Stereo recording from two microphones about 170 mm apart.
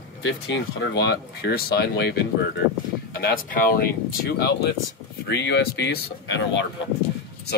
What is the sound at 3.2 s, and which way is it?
Speech, 60° left (ahead or behind).